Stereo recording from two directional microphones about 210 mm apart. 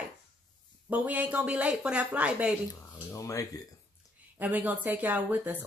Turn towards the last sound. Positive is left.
turn(degrees=-5)  # may be behind; listen again after turning